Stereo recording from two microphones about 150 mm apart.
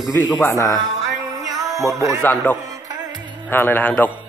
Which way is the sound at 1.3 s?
20° right (ahead or behind).